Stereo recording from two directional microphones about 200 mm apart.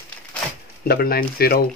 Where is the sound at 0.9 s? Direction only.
50° left (ahead or behind).